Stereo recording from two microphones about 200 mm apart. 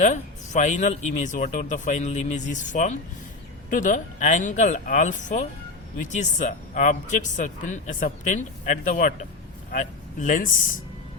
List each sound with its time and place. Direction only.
0.0 s speech: 35° left (ahead or behind)